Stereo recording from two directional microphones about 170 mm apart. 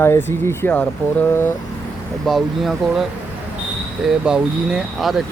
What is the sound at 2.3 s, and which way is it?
Speech, centre (ahead or behind).